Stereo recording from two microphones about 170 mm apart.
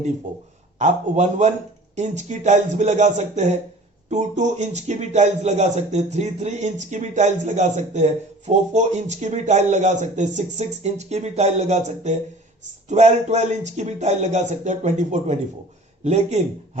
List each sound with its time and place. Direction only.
0.8 s speech: 45° right (ahead or behind)